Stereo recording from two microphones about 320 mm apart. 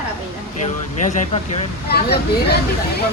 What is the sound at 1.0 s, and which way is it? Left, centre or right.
Speech, left.